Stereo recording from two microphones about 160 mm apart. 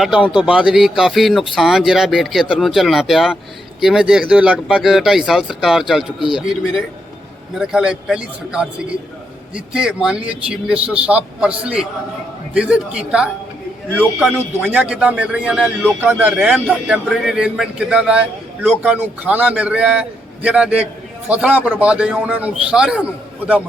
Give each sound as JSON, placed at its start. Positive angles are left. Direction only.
{"t": 0.0, "sound": "a man's voice", "side_deg": -5}